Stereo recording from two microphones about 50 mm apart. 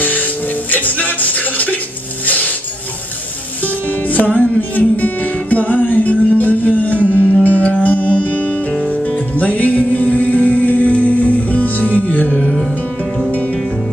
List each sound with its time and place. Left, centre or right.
0.0 s music: left
3.6 s music: left